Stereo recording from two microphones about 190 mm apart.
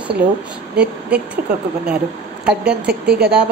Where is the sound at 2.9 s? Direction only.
60° right (ahead or behind).